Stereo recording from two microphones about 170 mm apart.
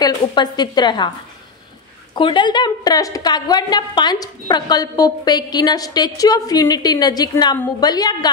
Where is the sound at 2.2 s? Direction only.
30° left (ahead or behind).